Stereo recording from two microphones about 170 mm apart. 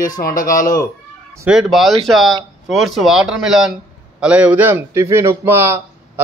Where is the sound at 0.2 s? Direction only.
50° left (ahead or behind).